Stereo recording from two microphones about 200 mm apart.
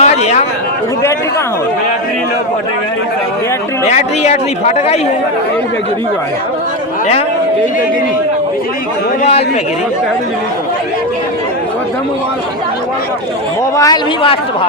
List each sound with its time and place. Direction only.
0.0 s chatter: 35° left (ahead or behind)
3.8 s a man's voice: 35° left (ahead or behind)
13.7 s speech: 20° left (ahead or behind)